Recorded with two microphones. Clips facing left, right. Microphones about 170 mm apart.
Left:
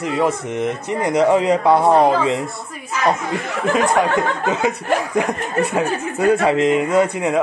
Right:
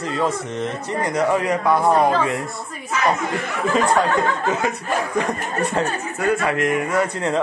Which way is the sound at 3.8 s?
15° left (ahead or behind).